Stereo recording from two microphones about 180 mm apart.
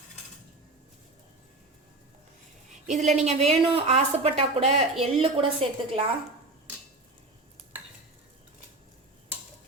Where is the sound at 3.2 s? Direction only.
35° right (ahead or behind).